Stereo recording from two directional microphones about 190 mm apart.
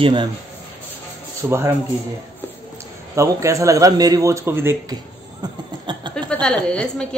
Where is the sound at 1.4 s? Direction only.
15° right (ahead or behind).